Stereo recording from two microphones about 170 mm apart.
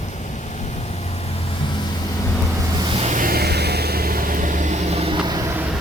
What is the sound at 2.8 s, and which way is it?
Vehicle, 30° right (ahead or behind).